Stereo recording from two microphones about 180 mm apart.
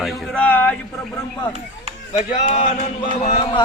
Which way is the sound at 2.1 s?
40° left (ahead or behind).